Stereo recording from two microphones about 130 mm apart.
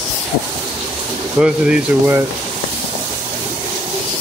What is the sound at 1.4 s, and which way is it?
Speech, 10° right (ahead or behind).